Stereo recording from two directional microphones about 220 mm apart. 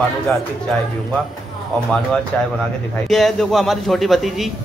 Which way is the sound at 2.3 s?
10° left (ahead or behind).